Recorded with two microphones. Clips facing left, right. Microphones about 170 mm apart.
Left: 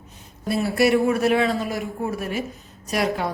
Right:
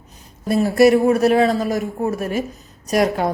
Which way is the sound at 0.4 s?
45° right (ahead or behind).